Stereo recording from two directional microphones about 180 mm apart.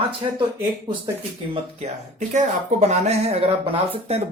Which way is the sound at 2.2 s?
40° right (ahead or behind).